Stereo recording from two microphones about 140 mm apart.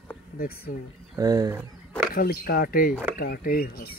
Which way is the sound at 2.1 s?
90° left.